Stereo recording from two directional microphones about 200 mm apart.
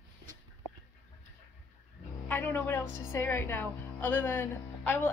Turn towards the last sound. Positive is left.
turn(degrees=10)  # may be behind; listen again after turning